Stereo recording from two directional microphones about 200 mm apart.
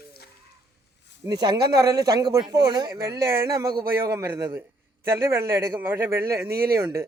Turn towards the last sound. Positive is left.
turn(degrees=-15)  # may be behind; listen again after turning